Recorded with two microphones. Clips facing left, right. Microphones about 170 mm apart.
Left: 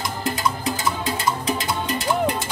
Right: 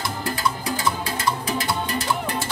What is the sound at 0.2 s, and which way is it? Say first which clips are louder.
Music: left 3 dB; 20° left (ahead or behind).